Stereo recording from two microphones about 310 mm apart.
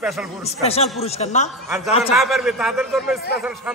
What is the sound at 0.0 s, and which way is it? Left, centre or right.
Speech, centre.